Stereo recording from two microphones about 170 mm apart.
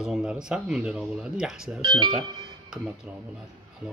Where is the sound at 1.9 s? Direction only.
30° right (ahead or behind).